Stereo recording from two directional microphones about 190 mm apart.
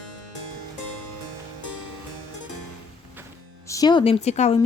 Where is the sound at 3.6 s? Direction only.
20° left (ahead or behind).